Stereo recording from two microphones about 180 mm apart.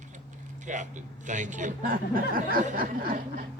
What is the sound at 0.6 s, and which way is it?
Speech, 45° right (ahead or behind).